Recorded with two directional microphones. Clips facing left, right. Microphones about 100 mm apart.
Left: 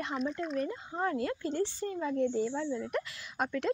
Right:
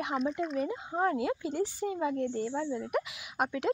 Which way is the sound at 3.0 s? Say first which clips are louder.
Right 2 dB; 15° right (ahead or behind).